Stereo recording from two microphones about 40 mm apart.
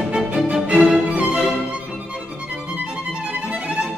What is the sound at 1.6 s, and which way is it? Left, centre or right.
Music, right.